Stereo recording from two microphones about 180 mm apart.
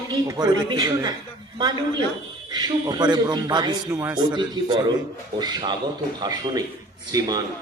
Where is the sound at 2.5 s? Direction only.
25° right (ahead or behind).